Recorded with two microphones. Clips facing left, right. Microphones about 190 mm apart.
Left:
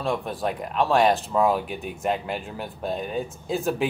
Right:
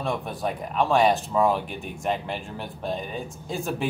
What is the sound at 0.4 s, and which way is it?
Speech, centre (ahead or behind).